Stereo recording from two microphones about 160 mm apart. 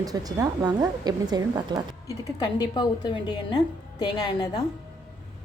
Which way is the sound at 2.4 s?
25° left (ahead or behind).